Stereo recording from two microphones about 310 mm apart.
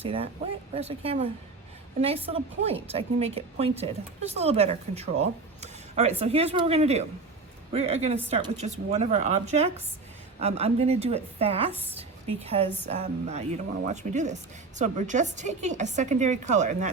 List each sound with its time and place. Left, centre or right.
0.0 s a woman's voice: centre